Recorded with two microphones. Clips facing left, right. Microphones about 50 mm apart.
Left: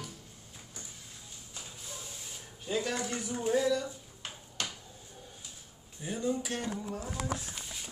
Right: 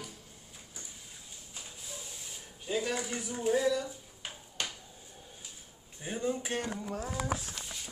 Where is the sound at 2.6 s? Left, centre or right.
Centre.